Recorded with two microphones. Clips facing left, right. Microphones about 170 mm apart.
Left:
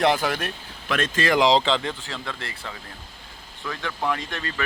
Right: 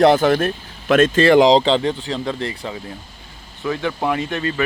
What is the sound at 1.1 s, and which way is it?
Speech, 30° right (ahead or behind).